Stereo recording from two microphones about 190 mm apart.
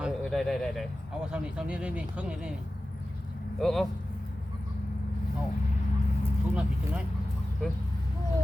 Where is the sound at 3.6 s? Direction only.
Centre (ahead or behind).